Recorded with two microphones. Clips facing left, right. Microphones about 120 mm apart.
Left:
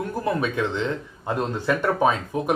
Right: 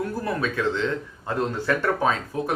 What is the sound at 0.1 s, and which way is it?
Speech, 20° left (ahead or behind).